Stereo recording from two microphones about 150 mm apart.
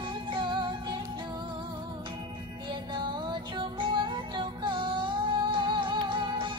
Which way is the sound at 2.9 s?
30° right (ahead or behind).